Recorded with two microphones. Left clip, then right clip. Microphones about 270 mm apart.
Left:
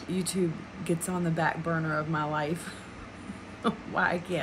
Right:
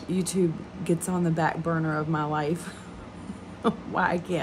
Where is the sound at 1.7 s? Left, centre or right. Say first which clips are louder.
Right 2 dB; centre.